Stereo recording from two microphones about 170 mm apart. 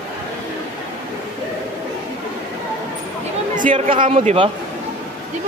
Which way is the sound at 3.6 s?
50° right (ahead or behind).